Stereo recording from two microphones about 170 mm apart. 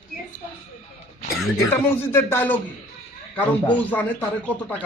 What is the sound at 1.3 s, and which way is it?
A man's voice, 15° left (ahead or behind).